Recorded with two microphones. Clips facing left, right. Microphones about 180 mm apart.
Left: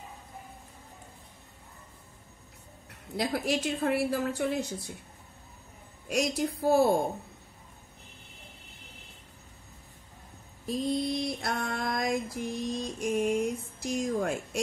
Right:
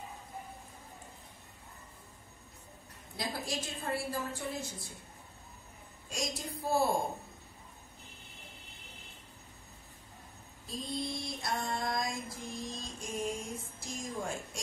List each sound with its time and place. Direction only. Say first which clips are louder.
3.2 s a woman's voice: left 9 dB; 65° left (ahead or behind)
6.0 s speech: left 10 dB; 65° left (ahead or behind)
10.7 s speech: left 9 dB; 65° left (ahead or behind)